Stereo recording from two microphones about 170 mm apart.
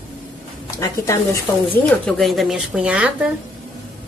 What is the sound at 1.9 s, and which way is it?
A woman's voice, 5° left (ahead or behind).